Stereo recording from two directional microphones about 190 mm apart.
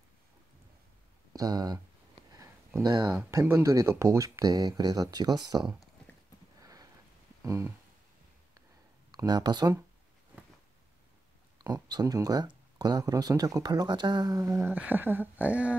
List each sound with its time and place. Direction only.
1.3 s speech: 20° right (ahead or behind)
2.8 s speech: 20° right (ahead or behind)
6.6 s sniff: 15° right (ahead or behind)
7.4 s a sound: 15° right (ahead or behind)
9.1 s speech: 20° right (ahead or behind)
11.5 s speech: 20° right (ahead or behind)